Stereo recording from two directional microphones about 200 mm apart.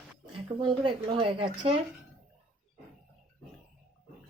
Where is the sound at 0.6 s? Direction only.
25° right (ahead or behind).